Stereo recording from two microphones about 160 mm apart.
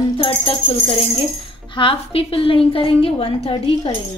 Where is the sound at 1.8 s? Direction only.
35° left (ahead or behind).